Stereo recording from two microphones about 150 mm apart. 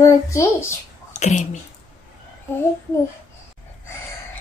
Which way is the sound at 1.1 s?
55° left (ahead or behind).